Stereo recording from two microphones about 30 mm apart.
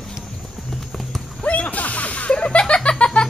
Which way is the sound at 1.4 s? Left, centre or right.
Left.